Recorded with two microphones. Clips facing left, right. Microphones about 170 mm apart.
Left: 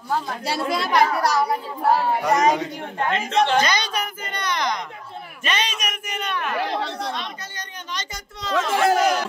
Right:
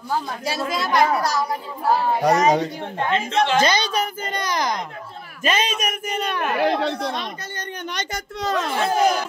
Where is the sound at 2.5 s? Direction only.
35° right (ahead or behind).